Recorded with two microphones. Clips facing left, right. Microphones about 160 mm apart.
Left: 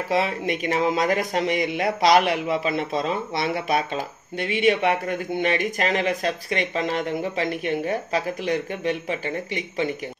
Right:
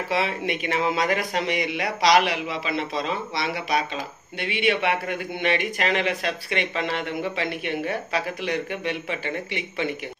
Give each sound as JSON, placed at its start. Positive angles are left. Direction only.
{"t": 0.1, "sound": "a man's voice", "side_deg": 45}